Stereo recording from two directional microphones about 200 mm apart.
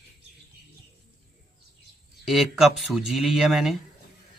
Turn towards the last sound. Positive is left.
turn(degrees=0)  # may be behind; listen again after turning